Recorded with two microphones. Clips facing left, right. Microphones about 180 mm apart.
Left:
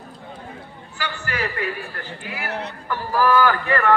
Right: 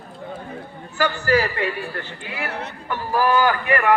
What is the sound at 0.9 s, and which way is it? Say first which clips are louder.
A man's voice: right 9 dB; 40° right (ahead or behind).